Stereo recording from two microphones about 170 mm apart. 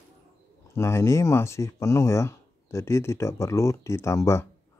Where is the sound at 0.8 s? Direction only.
15° left (ahead or behind).